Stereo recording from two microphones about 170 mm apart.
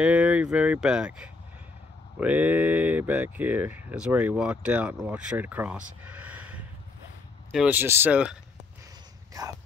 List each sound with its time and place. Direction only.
0.0 s speech: 5° right (ahead or behind)
9.3 s speech: 20° right (ahead or behind)